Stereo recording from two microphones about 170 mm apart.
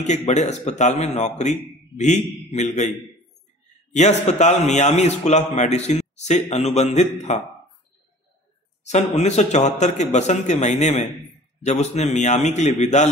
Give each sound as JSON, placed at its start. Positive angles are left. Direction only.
{"t": 0.0, "sound": "speech", "side_deg": 45}
{"t": 3.9, "sound": "a man's voice", "side_deg": 40}
{"t": 8.8, "sound": "speech", "side_deg": 40}